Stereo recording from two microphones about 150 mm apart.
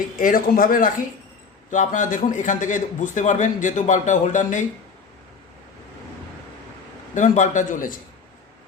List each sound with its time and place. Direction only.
0.2 s speech: 70° left (ahead or behind)
1.7 s a man's voice: 55° left (ahead or behind)
7.1 s a man's voice: 55° left (ahead or behind)